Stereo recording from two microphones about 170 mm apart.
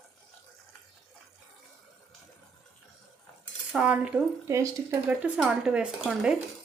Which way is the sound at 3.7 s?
5° right (ahead or behind).